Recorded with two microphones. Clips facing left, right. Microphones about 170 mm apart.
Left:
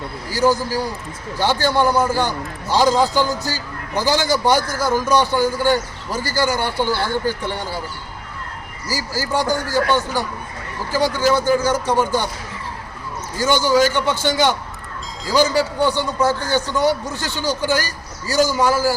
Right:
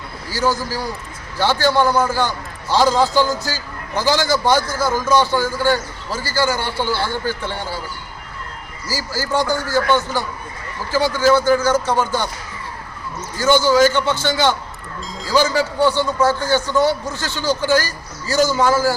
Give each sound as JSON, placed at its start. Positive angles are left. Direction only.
{"t": 0.3, "sound": "a man's voice", "side_deg": 15}
{"t": 8.9, "sound": "a man's voice", "side_deg": 15}
{"t": 13.4, "sound": "a man's voice", "side_deg": 15}